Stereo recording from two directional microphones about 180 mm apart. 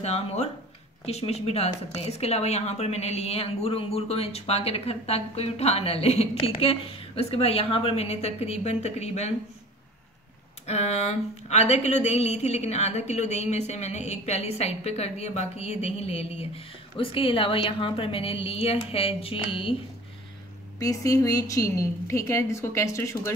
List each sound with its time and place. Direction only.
0.0 s speech: 35° left (ahead or behind)
10.7 s speech: 35° left (ahead or behind)
20.8 s a woman's voice: 20° left (ahead or behind)